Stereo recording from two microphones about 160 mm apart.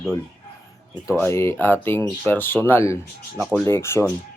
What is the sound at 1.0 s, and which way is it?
Speech, 15° left (ahead or behind).